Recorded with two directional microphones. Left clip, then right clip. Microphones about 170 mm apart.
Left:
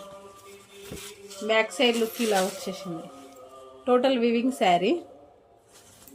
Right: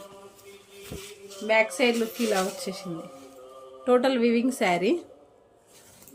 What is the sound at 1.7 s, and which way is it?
A woman's voice, 20° right (ahead or behind).